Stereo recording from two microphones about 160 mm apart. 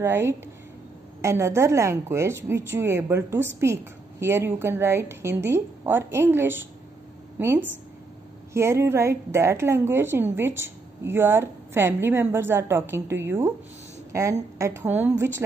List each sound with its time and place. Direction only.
0.0 s speech: 15° right (ahead or behind)